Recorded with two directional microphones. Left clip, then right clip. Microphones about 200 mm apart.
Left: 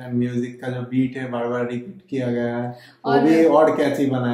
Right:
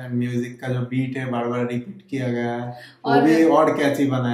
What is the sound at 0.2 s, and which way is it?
Speech, 15° right (ahead or behind).